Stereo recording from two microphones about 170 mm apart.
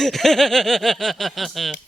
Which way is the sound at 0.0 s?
Centre (ahead or behind).